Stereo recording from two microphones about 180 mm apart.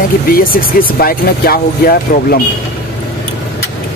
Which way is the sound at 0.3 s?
55° left (ahead or behind).